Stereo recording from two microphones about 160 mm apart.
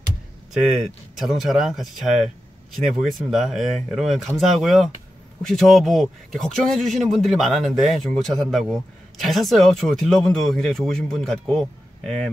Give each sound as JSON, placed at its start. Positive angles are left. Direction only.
{"t": 0.5, "sound": "speech", "side_deg": -5}